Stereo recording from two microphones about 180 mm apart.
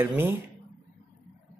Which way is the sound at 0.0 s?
10° right (ahead or behind).